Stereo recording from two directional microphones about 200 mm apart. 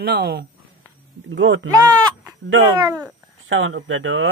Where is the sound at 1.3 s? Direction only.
65° right (ahead or behind).